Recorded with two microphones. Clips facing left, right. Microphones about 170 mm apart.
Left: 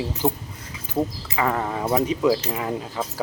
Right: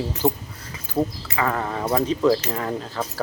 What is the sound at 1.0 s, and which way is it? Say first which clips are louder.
Speech: right 1 dB; 5° right (ahead or behind).